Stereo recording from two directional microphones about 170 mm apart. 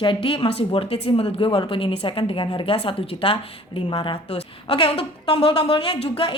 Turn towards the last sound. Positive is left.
turn(degrees=30)  # may be behind; listen again after turning